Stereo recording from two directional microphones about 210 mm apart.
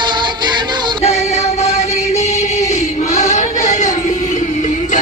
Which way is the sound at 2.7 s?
35° left (ahead or behind).